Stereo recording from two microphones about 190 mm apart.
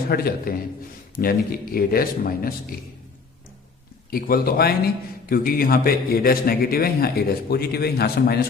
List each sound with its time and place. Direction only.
0.1 s a man's voice: 55° left (ahead or behind)
4.1 s a man's voice: 50° left (ahead or behind)